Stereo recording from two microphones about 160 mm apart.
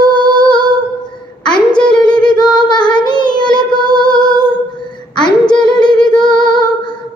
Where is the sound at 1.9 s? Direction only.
25° left (ahead or behind).